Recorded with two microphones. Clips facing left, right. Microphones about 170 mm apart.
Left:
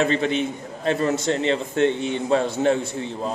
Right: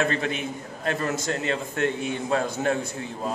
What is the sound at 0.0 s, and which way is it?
A man's voice, 20° left (ahead or behind).